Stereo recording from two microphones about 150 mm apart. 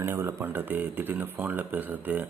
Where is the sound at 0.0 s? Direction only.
15° right (ahead or behind).